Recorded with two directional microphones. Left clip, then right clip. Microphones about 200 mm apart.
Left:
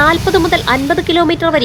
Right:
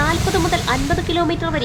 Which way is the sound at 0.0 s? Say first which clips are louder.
Left 8 dB; 30° left (ahead or behind).